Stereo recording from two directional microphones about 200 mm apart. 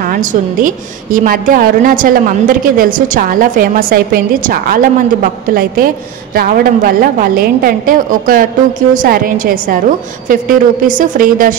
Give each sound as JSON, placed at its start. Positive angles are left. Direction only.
{"t": 0.0, "sound": "a woman's voice", "side_deg": -40}